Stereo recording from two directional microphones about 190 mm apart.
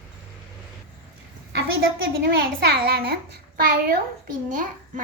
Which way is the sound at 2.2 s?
55° right (ahead or behind).